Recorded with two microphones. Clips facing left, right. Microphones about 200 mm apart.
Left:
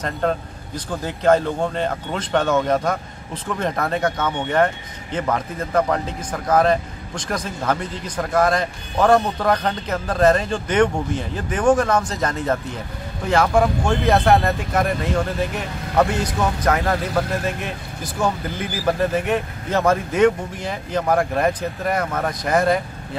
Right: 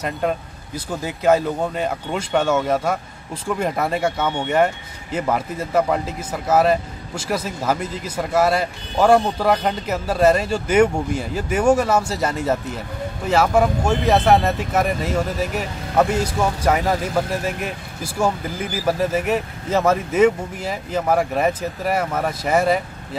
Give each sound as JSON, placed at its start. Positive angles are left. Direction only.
{"t": 0.0, "sound": "speech", "side_deg": -10}